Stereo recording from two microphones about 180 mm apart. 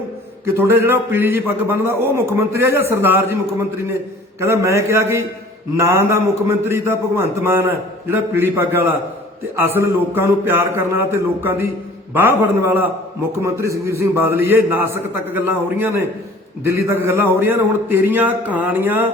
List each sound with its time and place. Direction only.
0.4 s a man's voice: 10° right (ahead or behind)
4.4 s a man's voice: 15° right (ahead or behind)